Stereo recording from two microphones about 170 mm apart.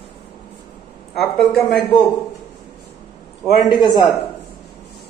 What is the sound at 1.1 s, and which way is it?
Speech, centre (ahead or behind).